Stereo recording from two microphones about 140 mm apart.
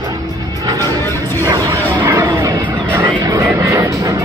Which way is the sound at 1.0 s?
20° left (ahead or behind).